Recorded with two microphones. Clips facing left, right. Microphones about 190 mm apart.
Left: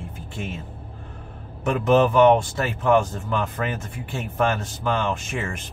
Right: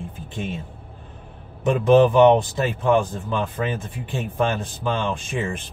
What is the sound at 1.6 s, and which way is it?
Speech, 15° right (ahead or behind).